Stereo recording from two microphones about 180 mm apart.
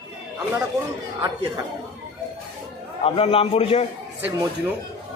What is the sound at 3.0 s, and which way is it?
Speech, 30° left (ahead or behind).